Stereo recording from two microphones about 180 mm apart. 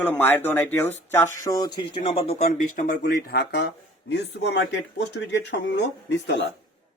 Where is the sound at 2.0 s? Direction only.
35° left (ahead or behind).